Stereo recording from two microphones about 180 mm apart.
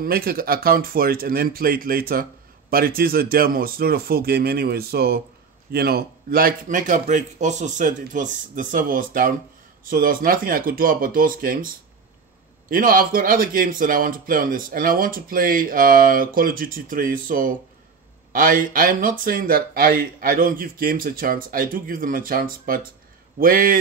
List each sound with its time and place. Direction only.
0.0 s speech: 55° right (ahead or behind)